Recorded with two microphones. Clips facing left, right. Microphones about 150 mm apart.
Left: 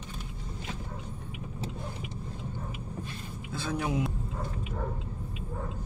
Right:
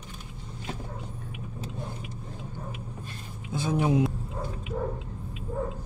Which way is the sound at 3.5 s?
20° right (ahead or behind).